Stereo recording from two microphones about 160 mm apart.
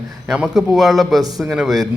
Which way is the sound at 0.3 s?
Centre (ahead or behind).